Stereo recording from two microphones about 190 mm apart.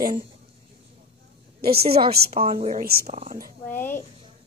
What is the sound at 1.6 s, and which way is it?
A woman's voice, 55° right (ahead or behind).